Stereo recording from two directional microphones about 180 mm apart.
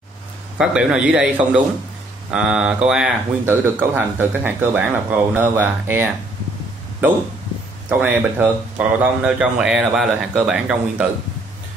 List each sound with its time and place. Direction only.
0.6 s a man's voice: 5° right (ahead or behind)
7.9 s speech: 10° right (ahead or behind)